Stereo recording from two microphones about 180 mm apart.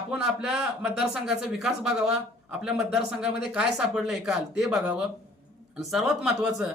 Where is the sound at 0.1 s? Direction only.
5° right (ahead or behind).